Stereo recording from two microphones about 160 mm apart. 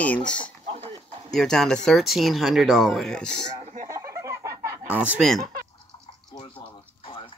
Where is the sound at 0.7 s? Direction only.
40° right (ahead or behind).